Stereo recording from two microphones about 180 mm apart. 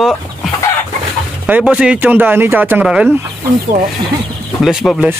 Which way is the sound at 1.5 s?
5° right (ahead or behind).